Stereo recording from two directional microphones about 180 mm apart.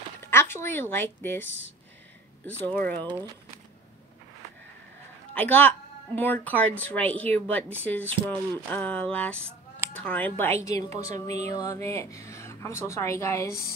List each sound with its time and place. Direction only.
0.2 s a woman's voice: 15° left (ahead or behind)
2.6 s a woman's voice: 10° left (ahead or behind)
5.3 s a woman's voice: 10° left (ahead or behind)